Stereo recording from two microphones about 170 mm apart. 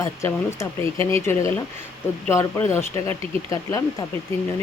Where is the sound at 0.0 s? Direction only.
15° left (ahead or behind).